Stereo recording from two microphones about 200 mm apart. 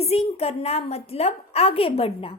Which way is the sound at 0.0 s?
30° left (ahead or behind).